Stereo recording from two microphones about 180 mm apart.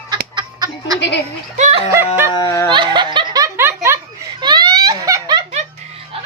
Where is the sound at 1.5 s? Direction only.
40° right (ahead or behind).